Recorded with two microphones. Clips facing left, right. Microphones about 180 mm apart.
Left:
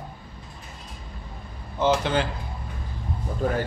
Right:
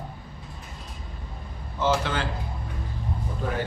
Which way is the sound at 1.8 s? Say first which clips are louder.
Left 3 dB; 20° left (ahead or behind).